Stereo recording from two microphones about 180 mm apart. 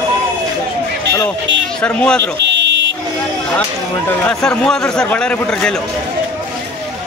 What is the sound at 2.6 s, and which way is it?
Vehicle, 85° right.